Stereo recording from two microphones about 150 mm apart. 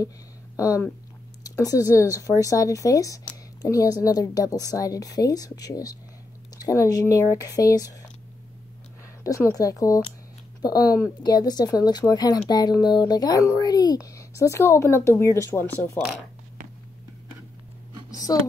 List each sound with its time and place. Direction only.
0.6 s speech: 20° left (ahead or behind)
9.2 s speech: 20° left (ahead or behind)
18.3 s speech: 25° left (ahead or behind)